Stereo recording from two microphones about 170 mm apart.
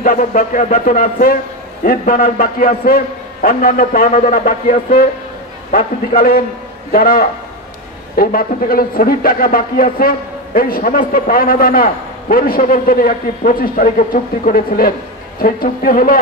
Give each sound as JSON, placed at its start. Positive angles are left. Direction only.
{"t": 0.0, "sound": "a man's voice", "side_deg": 50}